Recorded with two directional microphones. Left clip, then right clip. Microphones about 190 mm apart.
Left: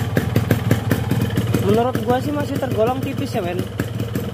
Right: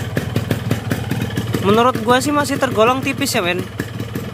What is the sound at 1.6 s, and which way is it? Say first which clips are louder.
Speech: right 5 dB; 15° right (ahead or behind).